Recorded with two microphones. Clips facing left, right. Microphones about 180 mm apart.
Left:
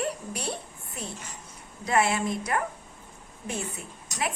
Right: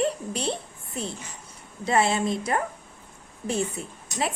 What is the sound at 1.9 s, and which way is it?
Speech, 30° right (ahead or behind).